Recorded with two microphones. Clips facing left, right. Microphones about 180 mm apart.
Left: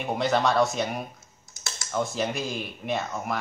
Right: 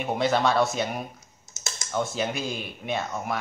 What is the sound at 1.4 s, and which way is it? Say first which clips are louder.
Typing: right 1 dB; 20° right (ahead or behind).